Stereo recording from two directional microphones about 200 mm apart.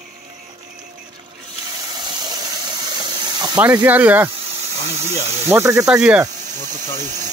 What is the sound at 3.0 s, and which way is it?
Steam, 20° right (ahead or behind).